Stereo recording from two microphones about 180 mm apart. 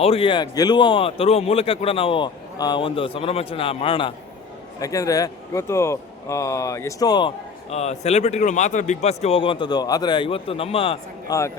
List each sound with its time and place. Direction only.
0.0 s a man's voice: 30° left (ahead or behind)
4.8 s speech: 20° left (ahead or behind)
7.7 s a man's voice: 35° left (ahead or behind)
11.3 s speech: 15° left (ahead or behind)